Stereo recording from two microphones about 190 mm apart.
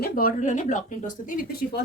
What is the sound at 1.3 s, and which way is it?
Speech, 55° left (ahead or behind).